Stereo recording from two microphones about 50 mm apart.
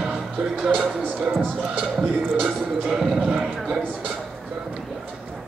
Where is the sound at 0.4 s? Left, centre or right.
Centre.